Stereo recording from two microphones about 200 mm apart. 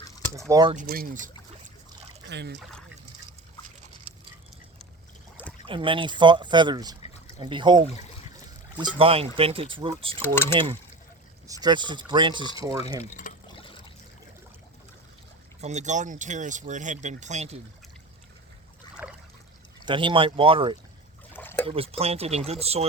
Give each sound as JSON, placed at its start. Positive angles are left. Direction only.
{"t": 0.3, "sound": "speech", "side_deg": -15}
{"t": 0.9, "sound": "speech", "side_deg": -45}
{"t": 2.2, "sound": "speech", "side_deg": -60}
{"t": 5.6, "sound": "speech", "side_deg": -25}
{"t": 10.2, "sound": "speech", "side_deg": 10}
{"t": 11.4, "sound": "speech", "side_deg": -20}
{"t": 13.0, "sound": "speech", "side_deg": 40}
{"t": 15.6, "sound": "speech", "side_deg": -35}
{"t": 19.0, "sound": "trickle", "side_deg": -5}
{"t": 19.8, "sound": "speech", "side_deg": -25}
{"t": 21.3, "sound": "a sound", "side_deg": 10}
{"t": 21.7, "sound": "speech", "side_deg": -30}